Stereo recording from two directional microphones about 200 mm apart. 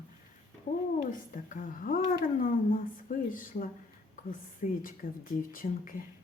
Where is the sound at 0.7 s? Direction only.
35° left (ahead or behind).